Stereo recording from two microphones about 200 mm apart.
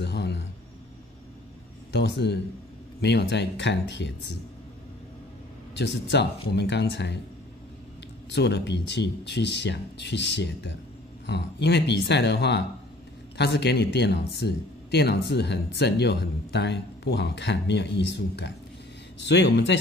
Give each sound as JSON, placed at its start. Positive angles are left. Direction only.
{"t": 0.0, "sound": "a sound", "side_deg": 60}
{"t": 1.9, "sound": "speech", "side_deg": 60}
{"t": 5.8, "sound": "speech", "side_deg": 60}
{"t": 8.3, "sound": "speech", "side_deg": 60}